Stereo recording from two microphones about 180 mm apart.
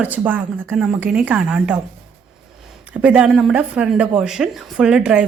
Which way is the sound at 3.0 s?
5° right (ahead or behind).